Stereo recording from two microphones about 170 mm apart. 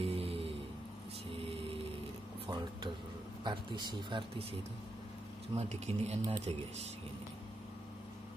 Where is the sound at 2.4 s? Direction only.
25° right (ahead or behind).